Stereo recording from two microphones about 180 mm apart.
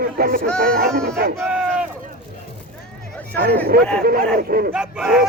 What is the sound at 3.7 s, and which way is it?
A man's voice, 55° right (ahead or behind).